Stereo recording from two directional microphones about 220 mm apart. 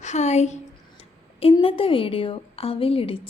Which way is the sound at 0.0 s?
30° left (ahead or behind).